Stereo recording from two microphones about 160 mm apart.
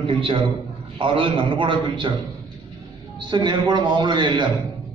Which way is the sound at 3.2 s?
25° right (ahead or behind).